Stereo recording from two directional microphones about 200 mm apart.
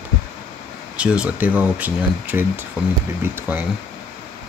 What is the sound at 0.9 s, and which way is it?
Speech, 5° right (ahead or behind).